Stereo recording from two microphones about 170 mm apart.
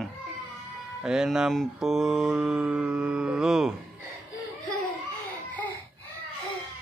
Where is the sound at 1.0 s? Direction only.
5° right (ahead or behind).